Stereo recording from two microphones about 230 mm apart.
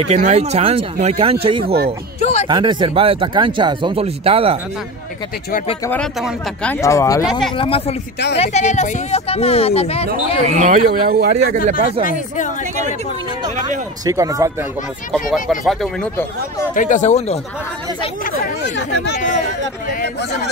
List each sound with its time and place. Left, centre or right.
0.1 s speech: right
2.1 s a sound: left
2.4 s speech: centre
5.9 s speech: centre
7.2 s speech: centre
7.5 s speech: left
10.6 s speech: right
12.1 s speech: left
14.0 s speech: centre
15.1 s speech: centre
16.7 s speech: left
18.8 s speech: left
19.2 s speech: right